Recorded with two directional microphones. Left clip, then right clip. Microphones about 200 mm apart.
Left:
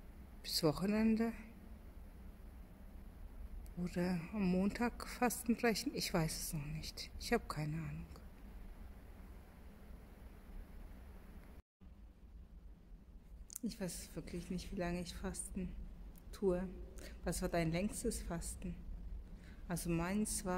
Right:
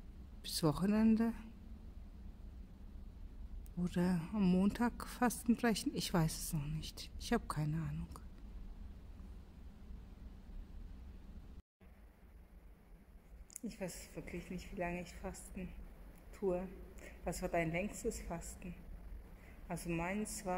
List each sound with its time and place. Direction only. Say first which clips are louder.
0.4 s speech: left 1 dB; 10° right (ahead or behind)
3.8 s speech: right 2 dB; 15° right (ahead or behind)
13.5 s a woman's voice: even; 15° left (ahead or behind)
17.2 s a woman's voice: right 1 dB; 20° left (ahead or behind)
19.9 s a woman's voice: even; 25° left (ahead or behind)